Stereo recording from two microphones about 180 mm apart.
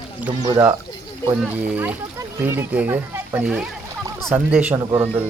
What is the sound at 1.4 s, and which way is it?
Speech, 10° right (ahead or behind).